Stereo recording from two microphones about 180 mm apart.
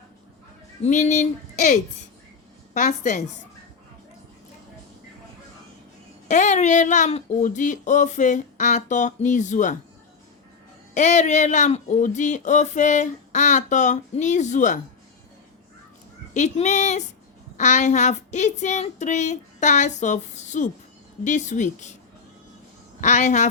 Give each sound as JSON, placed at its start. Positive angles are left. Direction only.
{"t": 0.8, "sound": "speech", "side_deg": 40}
{"t": 6.2, "sound": "speech", "side_deg": 40}
{"t": 10.9, "sound": "speech", "side_deg": 40}
{"t": 16.3, "sound": "speech", "side_deg": 40}
{"t": 23.0, "sound": "speech", "side_deg": 45}